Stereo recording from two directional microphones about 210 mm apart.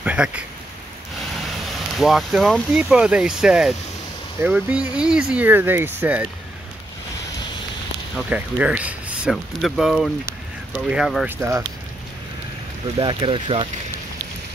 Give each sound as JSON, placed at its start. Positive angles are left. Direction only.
{"t": 0.0, "sound": "a sound", "side_deg": -5}
{"t": 2.0, "sound": "speech", "side_deg": 0}
{"t": 8.3, "sound": "speech", "side_deg": -5}
{"t": 13.0, "sound": "speech", "side_deg": -25}